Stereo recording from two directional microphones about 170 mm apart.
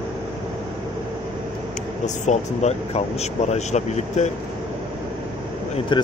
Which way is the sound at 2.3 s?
40° left (ahead or behind).